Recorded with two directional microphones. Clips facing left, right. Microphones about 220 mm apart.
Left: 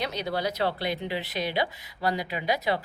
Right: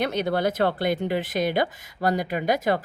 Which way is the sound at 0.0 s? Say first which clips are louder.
Right 6 dB; 55° right (ahead or behind).